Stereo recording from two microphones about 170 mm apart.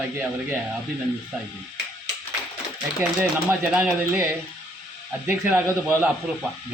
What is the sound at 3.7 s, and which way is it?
Speech, 10° right (ahead or behind).